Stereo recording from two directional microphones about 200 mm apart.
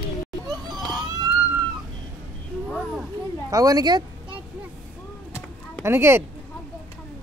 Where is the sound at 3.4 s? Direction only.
15° right (ahead or behind).